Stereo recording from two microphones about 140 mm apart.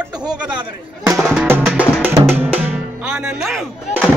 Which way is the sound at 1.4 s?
10° right (ahead or behind).